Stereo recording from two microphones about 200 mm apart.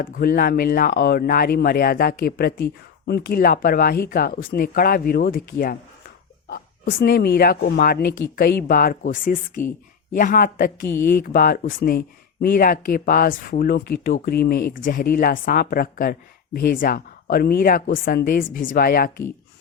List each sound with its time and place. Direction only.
0.0 s speech: 45° left (ahead or behind)
7.0 s speech: 50° left (ahead or behind)
9.6 s speech: 15° left (ahead or behind)
10.1 s speech: 40° left (ahead or behind)